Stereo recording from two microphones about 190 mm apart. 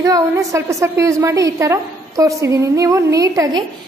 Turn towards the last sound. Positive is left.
turn(degrees=-20)  # may be behind; listen again after turning